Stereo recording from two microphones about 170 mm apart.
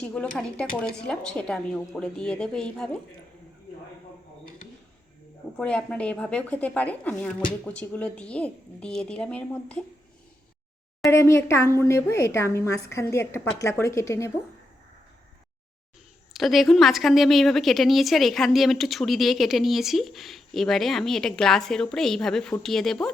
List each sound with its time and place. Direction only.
0.0 s a woman's voice: 5° left (ahead or behind)
5.5 s speech: 5° left (ahead or behind)
11.1 s speech: 15° left (ahead or behind)
16.3 s a woman's voice: centre (ahead or behind)